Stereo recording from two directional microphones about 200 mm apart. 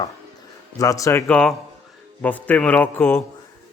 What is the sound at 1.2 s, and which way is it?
Speech, 5° left (ahead or behind).